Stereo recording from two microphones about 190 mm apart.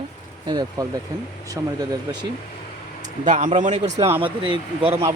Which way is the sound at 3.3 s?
40° right (ahead or behind).